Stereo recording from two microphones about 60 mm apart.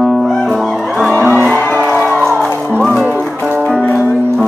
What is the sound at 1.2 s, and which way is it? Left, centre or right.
Music, right.